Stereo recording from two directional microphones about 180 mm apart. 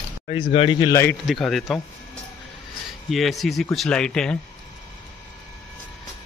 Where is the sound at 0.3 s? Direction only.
30° left (ahead or behind).